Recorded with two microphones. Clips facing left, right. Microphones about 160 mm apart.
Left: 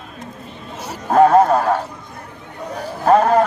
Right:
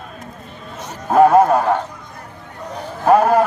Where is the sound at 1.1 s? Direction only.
5° right (ahead or behind).